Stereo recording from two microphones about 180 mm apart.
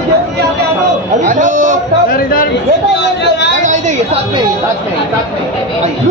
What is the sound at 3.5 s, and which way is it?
Speech, 45° right (ahead or behind).